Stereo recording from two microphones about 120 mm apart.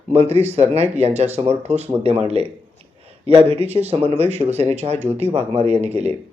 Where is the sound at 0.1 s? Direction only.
60° right (ahead or behind).